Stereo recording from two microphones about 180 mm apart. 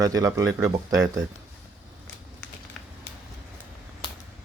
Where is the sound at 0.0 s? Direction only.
20° right (ahead or behind).